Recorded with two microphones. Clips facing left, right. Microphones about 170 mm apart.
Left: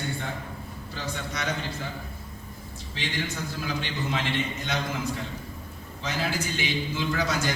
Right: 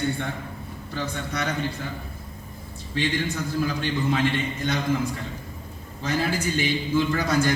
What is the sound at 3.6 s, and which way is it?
Speech, 50° right (ahead or behind).